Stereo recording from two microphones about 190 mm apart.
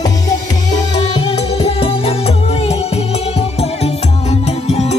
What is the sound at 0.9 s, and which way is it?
Music, 25° left (ahead or behind).